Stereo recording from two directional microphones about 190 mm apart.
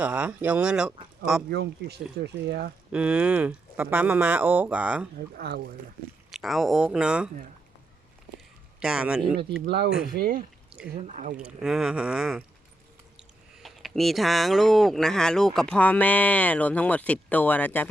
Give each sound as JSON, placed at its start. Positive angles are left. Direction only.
{"t": 0.0, "sound": "speech", "side_deg": -5}
{"t": 1.5, "sound": "speech", "side_deg": -55}
{"t": 2.9, "sound": "speech", "side_deg": -5}
{"t": 5.4, "sound": "speech", "side_deg": -55}
{"t": 6.3, "sound": "speech", "side_deg": 0}
{"t": 8.8, "sound": "speech", "side_deg": -5}
{"t": 9.6, "sound": "speech", "side_deg": -60}
{"t": 11.0, "sound": "speech", "side_deg": -40}
{"t": 11.3, "sound": "speech", "side_deg": -5}